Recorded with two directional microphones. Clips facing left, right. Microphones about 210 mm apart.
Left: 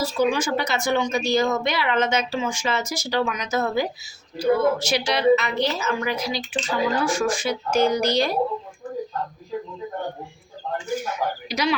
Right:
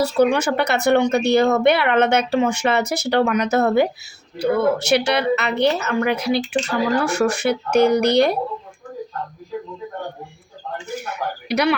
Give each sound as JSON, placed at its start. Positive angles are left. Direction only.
{"t": 0.0, "sound": "speech", "side_deg": -65}
{"t": 11.1, "sound": "speech", "side_deg": -65}